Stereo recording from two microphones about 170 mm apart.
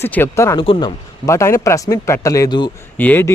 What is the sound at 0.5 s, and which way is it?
Speech, 30° left (ahead or behind).